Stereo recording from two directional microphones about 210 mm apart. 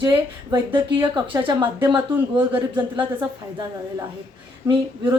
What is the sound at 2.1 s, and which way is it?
Speech, 10° right (ahead or behind).